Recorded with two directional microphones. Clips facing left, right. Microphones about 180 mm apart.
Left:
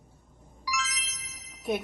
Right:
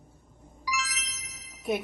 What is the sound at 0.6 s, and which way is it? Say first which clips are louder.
Music: even; centre (ahead or behind).